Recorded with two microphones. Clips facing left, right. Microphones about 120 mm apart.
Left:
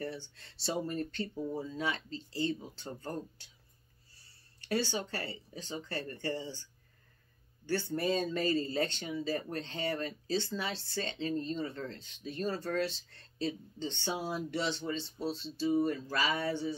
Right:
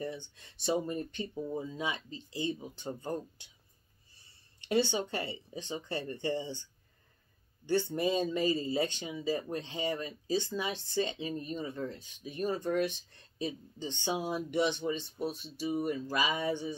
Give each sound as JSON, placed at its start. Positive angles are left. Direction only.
{"t": 0.0, "sound": "speech", "side_deg": -15}